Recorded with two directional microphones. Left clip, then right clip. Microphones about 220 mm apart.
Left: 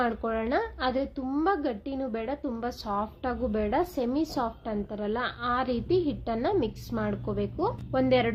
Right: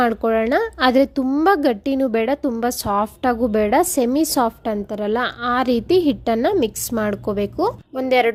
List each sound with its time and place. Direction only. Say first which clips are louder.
0.0 s speech: right 11 dB; 35° right (ahead or behind)